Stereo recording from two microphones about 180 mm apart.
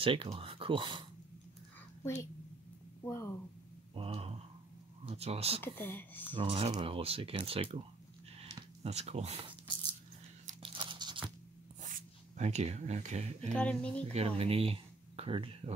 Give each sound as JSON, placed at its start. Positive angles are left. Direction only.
{"t": 0.0, "sound": "speech", "side_deg": -30}
{"t": 3.0, "sound": "speech", "side_deg": 15}
{"t": 3.9, "sound": "speech", "side_deg": -30}
{"t": 5.6, "sound": "speech", "side_deg": 10}
{"t": 6.3, "sound": "speech", "side_deg": -30}
{"t": 8.8, "sound": "speech", "side_deg": -35}
{"t": 10.6, "sound": "crunch", "side_deg": -30}
{"t": 11.9, "sound": "speech", "side_deg": -40}
{"t": 13.5, "sound": "speech", "side_deg": 5}
{"t": 14.1, "sound": "speech", "side_deg": -35}